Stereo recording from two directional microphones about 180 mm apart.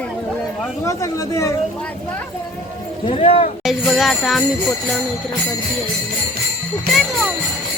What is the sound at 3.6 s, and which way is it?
Jingle bell, centre (ahead or behind).